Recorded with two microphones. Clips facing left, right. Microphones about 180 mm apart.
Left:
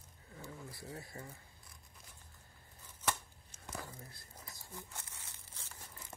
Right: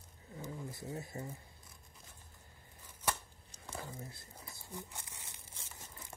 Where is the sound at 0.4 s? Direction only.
20° right (ahead or behind).